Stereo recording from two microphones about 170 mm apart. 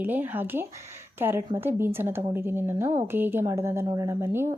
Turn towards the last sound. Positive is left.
turn(degrees=-15)  # may be behind; listen again after turning